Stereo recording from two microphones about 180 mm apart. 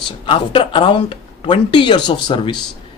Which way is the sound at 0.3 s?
30° left (ahead or behind).